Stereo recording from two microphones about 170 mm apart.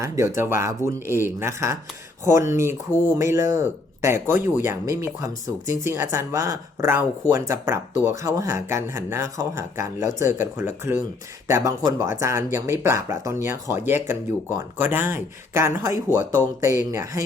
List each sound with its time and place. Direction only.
0.0 s speech: 15° right (ahead or behind)